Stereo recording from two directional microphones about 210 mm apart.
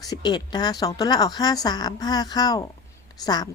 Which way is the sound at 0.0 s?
20° left (ahead or behind).